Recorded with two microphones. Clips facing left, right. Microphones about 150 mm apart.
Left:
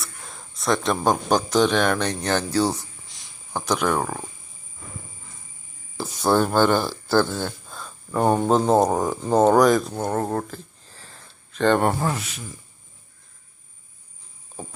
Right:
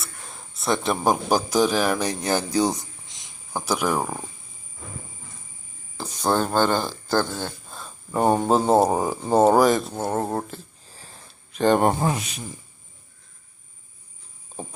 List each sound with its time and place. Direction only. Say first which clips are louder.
0.0 s speech: left 1 dB; centre (ahead or behind); by 3.3 s 20° right (ahead or behind)
3.5 s speech: left 1 dB; 10° right (ahead or behind)
6.0 s a sound: left 3 dB; 15° right (ahead or behind)
6.7 s speech: left 3 dB; 15° right (ahead or behind)
7.7 s speech: left 1 dB; centre (ahead or behind); by 12.5 s 20° right (ahead or behind)